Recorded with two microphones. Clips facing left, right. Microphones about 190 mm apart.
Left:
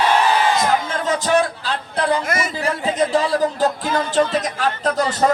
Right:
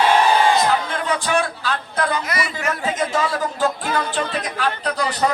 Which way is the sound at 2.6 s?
35° left (ahead or behind).